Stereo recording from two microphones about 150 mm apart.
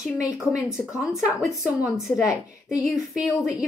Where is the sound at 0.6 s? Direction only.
20° left (ahead or behind).